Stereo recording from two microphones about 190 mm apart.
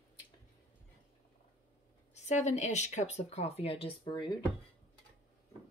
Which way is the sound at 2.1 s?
40° left (ahead or behind).